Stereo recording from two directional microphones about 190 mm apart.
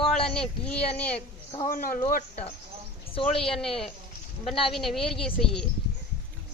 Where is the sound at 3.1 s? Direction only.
30° left (ahead or behind).